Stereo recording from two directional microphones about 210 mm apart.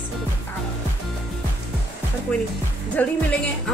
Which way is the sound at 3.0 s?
5° left (ahead or behind).